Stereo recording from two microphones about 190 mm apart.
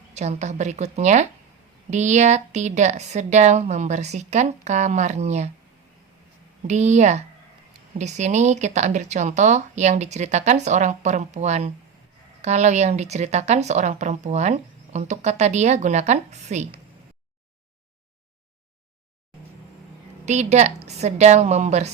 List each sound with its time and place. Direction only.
0.1 s speech: 35° right (ahead or behind)
6.7 s speech: 35° right (ahead or behind)
20.2 s speech: 35° right (ahead or behind)